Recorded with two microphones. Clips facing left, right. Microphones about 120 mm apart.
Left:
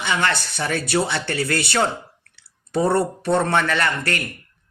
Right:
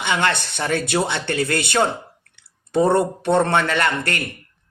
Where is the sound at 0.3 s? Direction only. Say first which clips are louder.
Right 1 dB; 55° right (ahead or behind).